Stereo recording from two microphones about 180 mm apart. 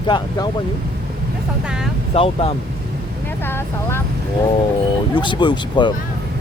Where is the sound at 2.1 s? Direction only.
30° left (ahead or behind).